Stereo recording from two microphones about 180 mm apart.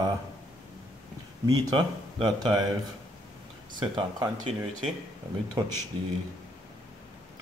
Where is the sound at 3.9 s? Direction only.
20° right (ahead or behind).